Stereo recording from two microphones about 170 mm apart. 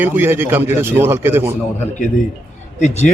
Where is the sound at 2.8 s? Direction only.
45° left (ahead or behind).